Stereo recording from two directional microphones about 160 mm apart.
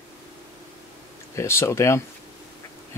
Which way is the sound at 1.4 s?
15° left (ahead or behind).